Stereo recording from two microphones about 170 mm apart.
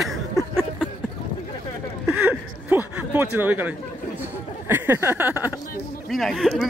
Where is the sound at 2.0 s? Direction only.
10° right (ahead or behind).